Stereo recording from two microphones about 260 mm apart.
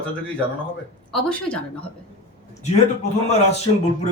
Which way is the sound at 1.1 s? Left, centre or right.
Centre.